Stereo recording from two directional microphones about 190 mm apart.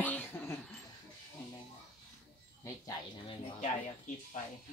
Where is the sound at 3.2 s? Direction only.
30° left (ahead or behind).